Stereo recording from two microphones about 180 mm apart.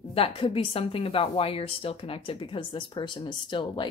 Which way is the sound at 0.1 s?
30° left (ahead or behind).